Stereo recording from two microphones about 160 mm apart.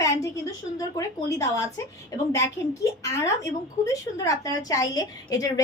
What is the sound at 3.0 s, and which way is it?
A woman's voice, 20° left (ahead or behind).